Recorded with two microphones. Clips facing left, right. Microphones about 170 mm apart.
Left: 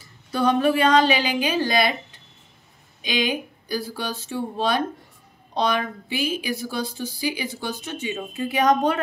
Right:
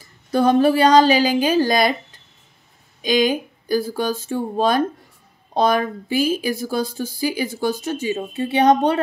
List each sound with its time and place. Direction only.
0.3 s a woman's voice: 45° right (ahead or behind)
3.0 s speech: 45° right (ahead or behind)